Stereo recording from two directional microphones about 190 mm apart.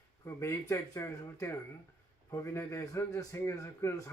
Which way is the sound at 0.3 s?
15° left (ahead or behind).